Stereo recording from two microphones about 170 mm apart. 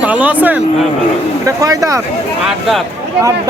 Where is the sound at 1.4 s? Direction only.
20° right (ahead or behind).